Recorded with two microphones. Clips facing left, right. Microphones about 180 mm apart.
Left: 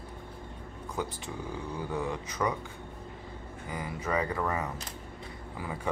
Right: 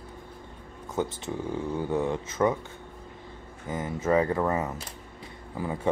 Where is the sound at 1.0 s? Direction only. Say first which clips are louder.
Right 6 dB; 25° right (ahead or behind).